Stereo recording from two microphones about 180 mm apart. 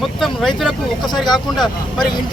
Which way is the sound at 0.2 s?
Centre (ahead or behind).